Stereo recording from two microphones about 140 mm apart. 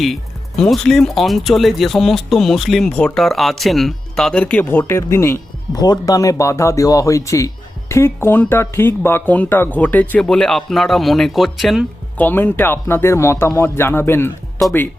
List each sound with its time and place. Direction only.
0.0 s speech: centre (ahead or behind)
12.1 s speech: 15° left (ahead or behind)